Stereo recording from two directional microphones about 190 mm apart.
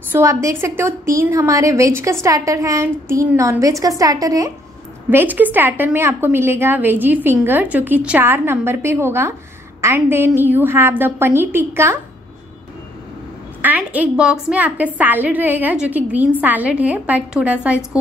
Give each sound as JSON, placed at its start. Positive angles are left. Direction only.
{"t": 0.1, "sound": "a woman's voice", "side_deg": -15}
{"t": 13.6, "sound": "a woman's voice", "side_deg": -10}